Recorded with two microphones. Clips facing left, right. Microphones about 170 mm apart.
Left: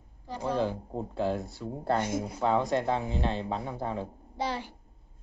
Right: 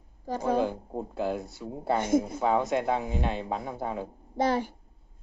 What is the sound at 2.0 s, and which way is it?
Speech, 50° right (ahead or behind).